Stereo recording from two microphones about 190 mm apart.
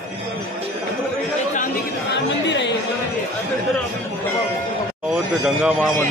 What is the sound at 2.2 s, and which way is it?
Speech, 70° left (ahead or behind).